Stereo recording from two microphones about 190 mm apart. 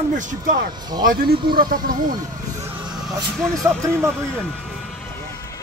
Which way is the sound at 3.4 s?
Centre (ahead or behind).